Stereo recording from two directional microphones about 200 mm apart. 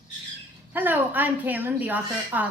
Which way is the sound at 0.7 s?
10° right (ahead or behind).